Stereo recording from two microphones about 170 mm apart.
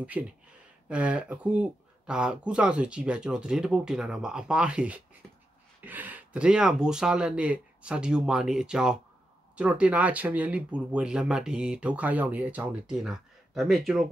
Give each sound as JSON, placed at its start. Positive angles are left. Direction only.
{"t": 0.2, "sound": "speech", "side_deg": -5}
{"t": 5.2, "sound": "a sound", "side_deg": 5}
{"t": 5.9, "sound": "speech", "side_deg": -10}